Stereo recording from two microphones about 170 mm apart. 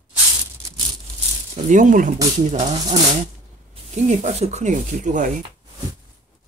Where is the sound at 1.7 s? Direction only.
50° right (ahead or behind).